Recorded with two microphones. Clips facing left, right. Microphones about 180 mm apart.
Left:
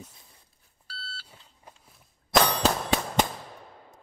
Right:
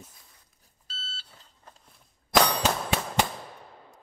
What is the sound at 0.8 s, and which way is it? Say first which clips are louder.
Beep: left 3 dB; 20° right (ahead or behind).